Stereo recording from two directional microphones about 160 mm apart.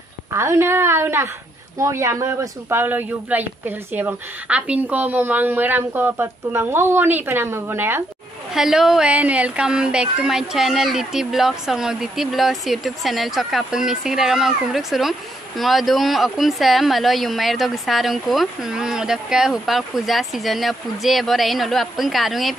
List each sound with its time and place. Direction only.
0.3 s speech: 15° right (ahead or behind)
8.5 s speech: centre (ahead or behind)